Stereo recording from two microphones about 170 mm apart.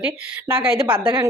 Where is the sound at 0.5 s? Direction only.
30° right (ahead or behind).